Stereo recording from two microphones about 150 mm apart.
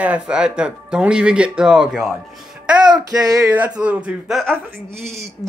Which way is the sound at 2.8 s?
25° right (ahead or behind).